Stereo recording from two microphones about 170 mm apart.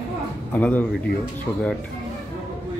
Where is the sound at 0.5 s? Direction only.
10° left (ahead or behind).